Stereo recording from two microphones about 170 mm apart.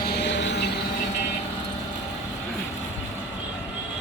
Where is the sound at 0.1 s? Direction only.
85° left.